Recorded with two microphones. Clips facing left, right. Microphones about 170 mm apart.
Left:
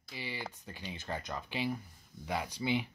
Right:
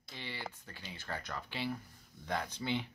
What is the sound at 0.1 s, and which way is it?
Speech, 10° left (ahead or behind).